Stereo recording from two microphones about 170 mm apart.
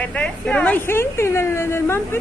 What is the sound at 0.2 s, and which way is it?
A woman's voice, 5° left (ahead or behind).